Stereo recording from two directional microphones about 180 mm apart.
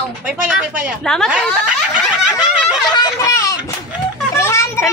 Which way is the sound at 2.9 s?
20° left (ahead or behind).